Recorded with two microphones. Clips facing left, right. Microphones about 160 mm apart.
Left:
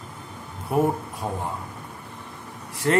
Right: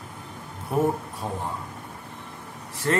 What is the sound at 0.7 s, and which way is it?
Speech, 10° left (ahead or behind).